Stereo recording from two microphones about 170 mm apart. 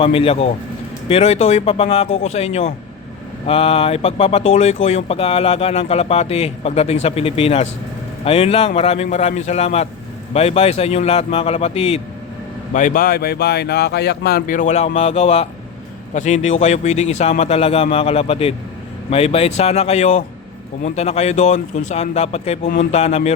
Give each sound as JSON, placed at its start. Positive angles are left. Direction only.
{"t": 0.0, "sound": "speech", "side_deg": 35}
{"t": 12.7, "sound": "speech", "side_deg": 50}